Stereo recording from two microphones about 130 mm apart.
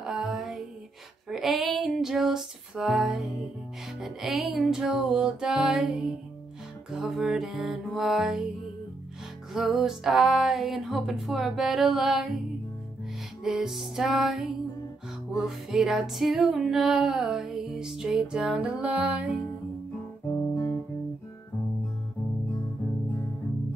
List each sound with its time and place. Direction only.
0.0 s a sound: 5° right (ahead or behind)
1.3 s female singing: centre (ahead or behind)
4.0 s music: centre (ahead or behind)
9.5 s music: centre (ahead or behind)
13.4 s music: 5° right (ahead or behind)
20.3 s guitar: 20° left (ahead or behind)